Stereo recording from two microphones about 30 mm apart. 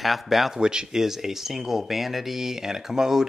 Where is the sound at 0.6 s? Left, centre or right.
Right.